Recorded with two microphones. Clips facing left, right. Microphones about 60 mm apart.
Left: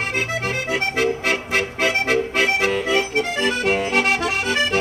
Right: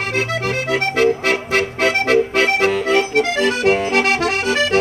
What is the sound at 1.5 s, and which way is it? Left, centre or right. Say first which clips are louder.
Accordion: right 3 dB; right.